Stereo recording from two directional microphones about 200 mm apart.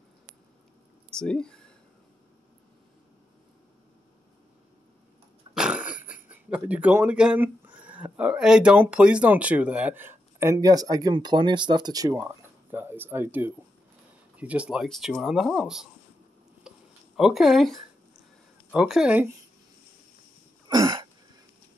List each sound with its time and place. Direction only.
1.1 s speech: 5° left (ahead or behind)
5.5 s cough: 5° right (ahead or behind)
6.5 s speech: 10° right (ahead or behind)
16.6 s a sound: 5° right (ahead or behind)
17.2 s speech: centre (ahead or behind)
20.6 s throat clearing: 20° right (ahead or behind)